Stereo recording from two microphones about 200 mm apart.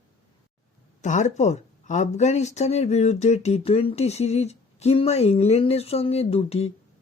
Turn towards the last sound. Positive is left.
turn(degrees=30)  # may be behind; listen again after turning